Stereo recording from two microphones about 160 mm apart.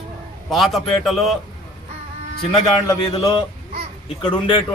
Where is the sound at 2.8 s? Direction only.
25° left (ahead or behind).